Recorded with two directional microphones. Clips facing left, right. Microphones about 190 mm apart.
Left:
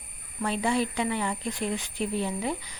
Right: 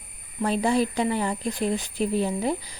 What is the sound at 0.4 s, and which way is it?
Speech, 40° right (ahead or behind).